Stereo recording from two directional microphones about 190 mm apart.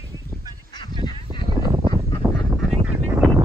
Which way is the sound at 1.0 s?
25° left (ahead or behind).